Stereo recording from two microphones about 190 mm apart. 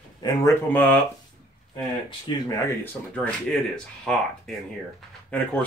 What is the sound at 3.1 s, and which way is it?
Speech, 5° left (ahead or behind).